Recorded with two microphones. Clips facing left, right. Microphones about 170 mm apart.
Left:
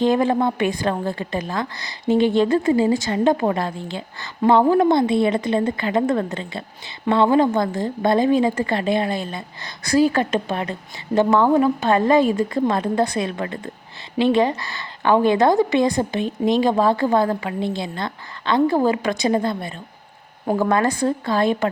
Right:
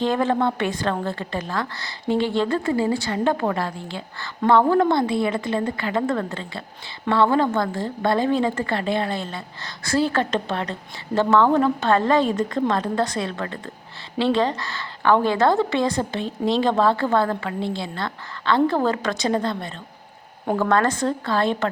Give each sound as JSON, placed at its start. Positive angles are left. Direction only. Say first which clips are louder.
{"t": 0.0, "sound": "a woman's voice", "louder": "left 3 dB", "side_deg": 15}